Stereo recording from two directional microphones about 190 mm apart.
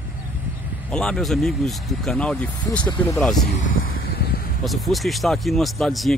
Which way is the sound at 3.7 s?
50° left (ahead or behind).